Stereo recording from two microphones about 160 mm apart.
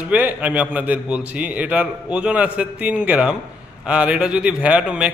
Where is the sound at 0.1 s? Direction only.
10° right (ahead or behind).